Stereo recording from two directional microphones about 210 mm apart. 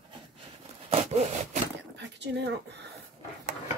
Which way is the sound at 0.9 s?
30° right (ahead or behind).